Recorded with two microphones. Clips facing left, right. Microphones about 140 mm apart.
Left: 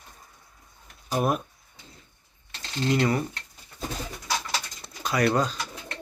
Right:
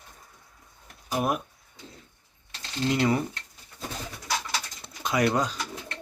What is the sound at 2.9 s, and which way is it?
Speech, 20° right (ahead or behind).